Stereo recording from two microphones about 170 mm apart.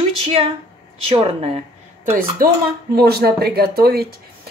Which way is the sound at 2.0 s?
50° right (ahead or behind).